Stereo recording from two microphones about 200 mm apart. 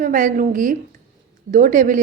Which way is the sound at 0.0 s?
40° right (ahead or behind).